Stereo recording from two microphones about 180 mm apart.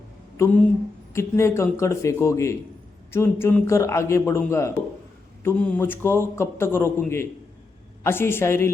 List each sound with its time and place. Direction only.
0.3 s a man's voice: 10° left (ahead or behind)